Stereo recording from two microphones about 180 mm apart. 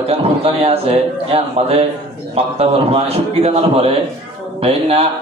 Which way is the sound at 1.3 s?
35° right (ahead or behind).